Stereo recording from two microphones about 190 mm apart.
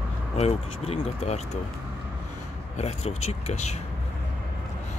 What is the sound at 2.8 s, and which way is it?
Speech, 35° left (ahead or behind).